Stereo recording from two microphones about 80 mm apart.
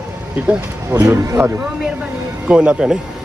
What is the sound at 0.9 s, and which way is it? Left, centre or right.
Speech, centre.